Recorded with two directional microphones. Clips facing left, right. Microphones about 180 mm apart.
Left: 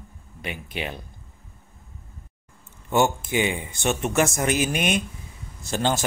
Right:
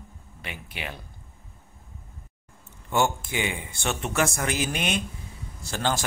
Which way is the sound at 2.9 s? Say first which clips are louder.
Left 4 dB; 20° left (ahead or behind).